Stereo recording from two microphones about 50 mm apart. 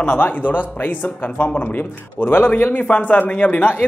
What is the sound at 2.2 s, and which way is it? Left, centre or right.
Speech, left.